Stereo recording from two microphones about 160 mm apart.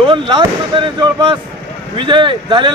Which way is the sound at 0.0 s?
30° right (ahead or behind).